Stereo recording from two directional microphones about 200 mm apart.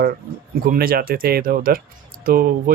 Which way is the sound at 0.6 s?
45° right (ahead or behind).